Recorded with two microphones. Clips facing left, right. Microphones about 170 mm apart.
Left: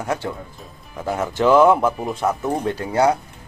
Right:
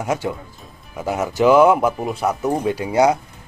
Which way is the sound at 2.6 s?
15° right (ahead or behind).